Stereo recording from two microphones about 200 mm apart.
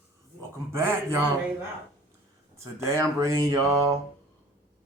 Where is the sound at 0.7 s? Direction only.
15° right (ahead or behind).